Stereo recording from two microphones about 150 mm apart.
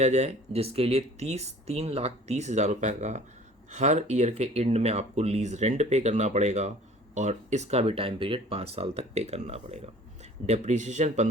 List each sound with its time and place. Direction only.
0.0 s speech: 45° right (ahead or behind)